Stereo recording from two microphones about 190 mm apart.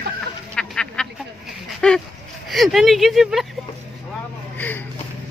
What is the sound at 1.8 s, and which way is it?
Speech, 5° left (ahead or behind).